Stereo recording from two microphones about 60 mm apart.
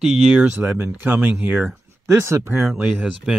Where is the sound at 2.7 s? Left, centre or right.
Right.